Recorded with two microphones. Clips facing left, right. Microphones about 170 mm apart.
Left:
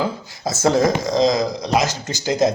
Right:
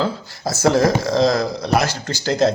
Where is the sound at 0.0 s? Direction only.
20° left (ahead or behind).